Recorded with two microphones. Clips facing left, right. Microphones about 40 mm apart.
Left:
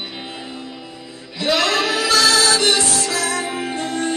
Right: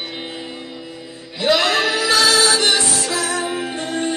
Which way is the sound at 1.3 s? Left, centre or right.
Right.